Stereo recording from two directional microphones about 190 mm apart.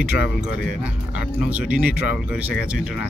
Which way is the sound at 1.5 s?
5° right (ahead or behind).